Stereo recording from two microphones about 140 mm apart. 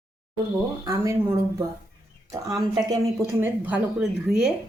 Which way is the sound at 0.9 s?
20° right (ahead or behind).